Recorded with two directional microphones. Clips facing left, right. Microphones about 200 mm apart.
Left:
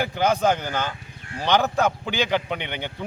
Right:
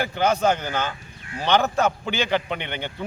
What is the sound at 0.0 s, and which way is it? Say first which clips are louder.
A man's voice: even; 10° left (ahead or behind).